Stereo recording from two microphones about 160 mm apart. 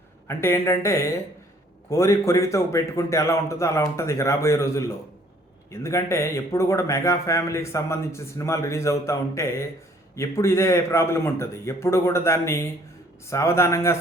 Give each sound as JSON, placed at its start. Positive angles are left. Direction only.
{"t": 0.3, "sound": "a man's voice", "side_deg": 15}